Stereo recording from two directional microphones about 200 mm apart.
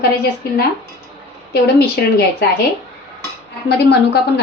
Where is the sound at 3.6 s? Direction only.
55° left (ahead or behind).